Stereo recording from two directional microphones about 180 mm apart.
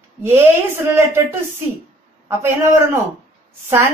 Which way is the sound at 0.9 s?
15° right (ahead or behind).